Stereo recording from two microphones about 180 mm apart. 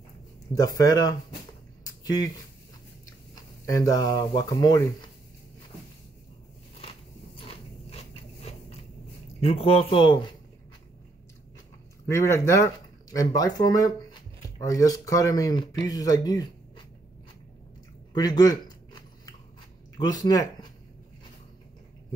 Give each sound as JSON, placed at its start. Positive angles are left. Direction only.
{"t": 0.6, "sound": "speech", "side_deg": 20}
{"t": 3.3, "sound": "speech", "side_deg": 20}
{"t": 7.3, "sound": "biting", "side_deg": 30}
{"t": 9.4, "sound": "speech", "side_deg": 30}
{"t": 12.1, "sound": "speech", "side_deg": 15}
{"t": 18.1, "sound": "speech", "side_deg": 20}
{"t": 20.0, "sound": "speech", "side_deg": 20}